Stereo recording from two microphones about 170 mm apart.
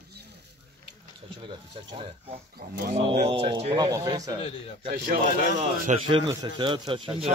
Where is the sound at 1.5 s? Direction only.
25° right (ahead or behind).